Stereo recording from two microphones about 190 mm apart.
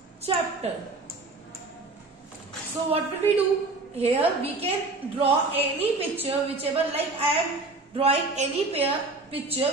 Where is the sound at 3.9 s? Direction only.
30° right (ahead or behind).